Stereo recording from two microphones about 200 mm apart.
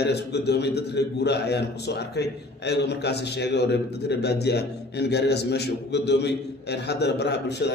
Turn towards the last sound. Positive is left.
turn(degrees=55)  # may be behind; listen again after turning